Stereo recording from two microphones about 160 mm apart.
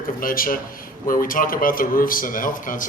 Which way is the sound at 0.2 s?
60° left (ahead or behind).